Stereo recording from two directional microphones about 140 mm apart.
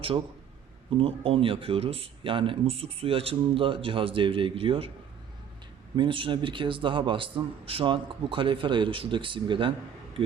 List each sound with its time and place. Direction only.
0.9 s speech: 40° right (ahead or behind)
6.0 s speech: 40° right (ahead or behind)